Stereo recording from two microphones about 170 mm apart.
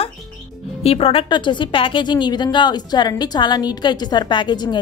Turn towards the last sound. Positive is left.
turn(degrees=25)  # may be behind; listen again after turning